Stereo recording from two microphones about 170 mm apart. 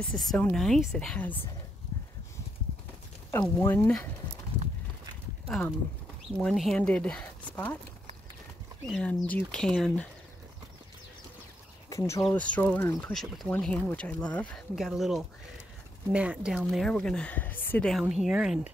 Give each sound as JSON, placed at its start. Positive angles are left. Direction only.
{"t": 0.1, "sound": "speech", "side_deg": 5}
{"t": 3.3, "sound": "speech", "side_deg": 15}
{"t": 6.4, "sound": "speech", "side_deg": 0}
{"t": 8.8, "sound": "speech", "side_deg": 5}
{"t": 11.9, "sound": "speech", "side_deg": 15}